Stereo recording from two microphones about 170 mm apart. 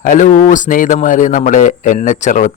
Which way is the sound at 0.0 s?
50° left (ahead or behind).